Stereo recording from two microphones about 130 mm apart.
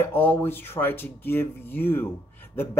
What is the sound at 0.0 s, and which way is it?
Speech, 15° left (ahead or behind).